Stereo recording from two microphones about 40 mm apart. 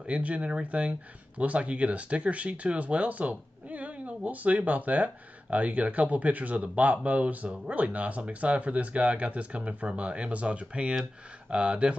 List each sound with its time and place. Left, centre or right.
0.0 s speech: right